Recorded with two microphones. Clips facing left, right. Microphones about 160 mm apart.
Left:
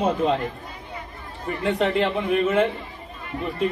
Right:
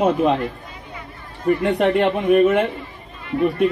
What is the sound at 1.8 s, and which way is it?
Speech, 65° right (ahead or behind).